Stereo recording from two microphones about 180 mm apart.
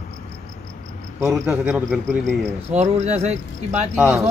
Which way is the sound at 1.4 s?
5° right (ahead or behind).